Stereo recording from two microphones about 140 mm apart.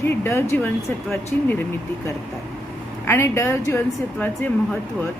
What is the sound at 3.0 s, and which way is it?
Speech, 15° left (ahead or behind).